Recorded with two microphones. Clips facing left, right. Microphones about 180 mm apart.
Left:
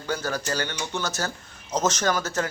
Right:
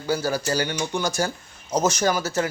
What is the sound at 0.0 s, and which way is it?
Speech, 10° right (ahead or behind).